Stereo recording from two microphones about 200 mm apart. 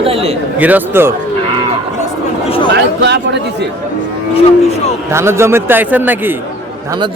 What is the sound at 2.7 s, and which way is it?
Speech, 60° right (ahead or behind).